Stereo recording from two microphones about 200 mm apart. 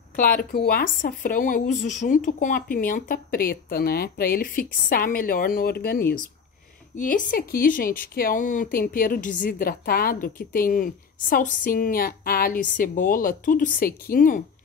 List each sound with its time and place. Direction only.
0.1 s speech: 40° left (ahead or behind)